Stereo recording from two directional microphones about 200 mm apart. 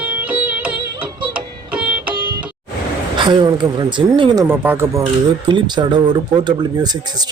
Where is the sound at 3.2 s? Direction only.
20° right (ahead or behind).